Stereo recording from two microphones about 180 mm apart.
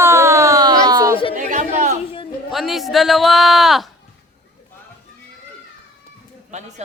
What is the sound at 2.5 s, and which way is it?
A man's voice, centre (ahead or behind).